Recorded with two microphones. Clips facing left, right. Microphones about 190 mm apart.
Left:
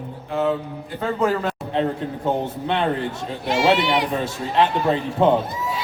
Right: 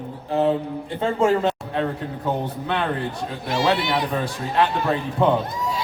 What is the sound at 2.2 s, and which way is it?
Speech, 25° left (ahead or behind).